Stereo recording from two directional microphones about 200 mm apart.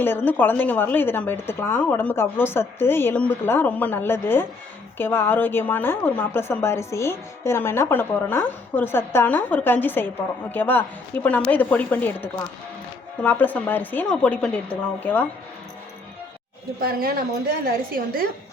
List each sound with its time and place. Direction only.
0.0 s a woman's voice: 10° left (ahead or behind)
16.8 s a woman's voice: 50° right (ahead or behind)